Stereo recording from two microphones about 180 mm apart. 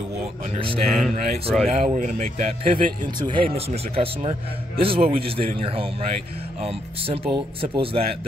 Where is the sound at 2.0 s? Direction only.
45° right (ahead or behind).